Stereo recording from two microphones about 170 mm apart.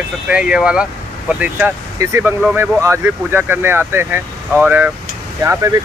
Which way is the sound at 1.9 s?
15° right (ahead or behind).